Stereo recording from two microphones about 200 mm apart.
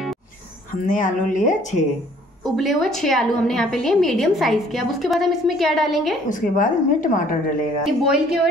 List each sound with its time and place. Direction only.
0.8 s speech: 40° left (ahead or behind)
2.4 s a woman's voice: centre (ahead or behind)
6.2 s speech: 40° left (ahead or behind)
7.8 s a woman's voice: 5° right (ahead or behind)